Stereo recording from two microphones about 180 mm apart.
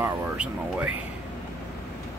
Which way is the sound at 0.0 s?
10° right (ahead or behind).